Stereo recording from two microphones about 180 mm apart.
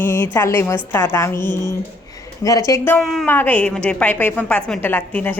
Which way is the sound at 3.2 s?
10° left (ahead or behind).